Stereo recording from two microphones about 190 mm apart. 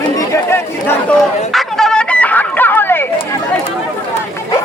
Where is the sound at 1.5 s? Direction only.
Centre (ahead or behind).